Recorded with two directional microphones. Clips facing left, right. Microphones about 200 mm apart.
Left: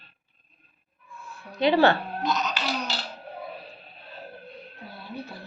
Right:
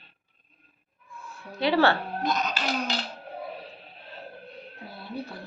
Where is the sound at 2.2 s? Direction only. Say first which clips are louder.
Even; 55° right (ahead or behind).